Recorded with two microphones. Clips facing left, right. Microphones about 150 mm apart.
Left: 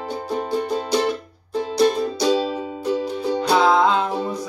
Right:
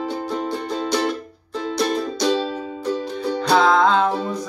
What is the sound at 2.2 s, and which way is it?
Music, 10° left (ahead or behind).